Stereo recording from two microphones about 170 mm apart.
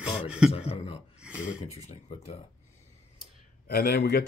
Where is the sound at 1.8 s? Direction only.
40° left (ahead or behind).